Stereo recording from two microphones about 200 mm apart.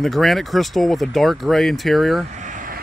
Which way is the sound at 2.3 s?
40° right (ahead or behind).